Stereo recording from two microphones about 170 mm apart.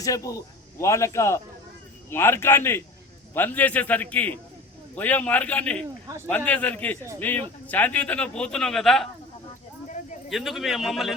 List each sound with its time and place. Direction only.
0.0 s a man's voice: 20° left (ahead or behind); by 9.0 s centre (ahead or behind)
10.2 s a man's voice: centre (ahead or behind)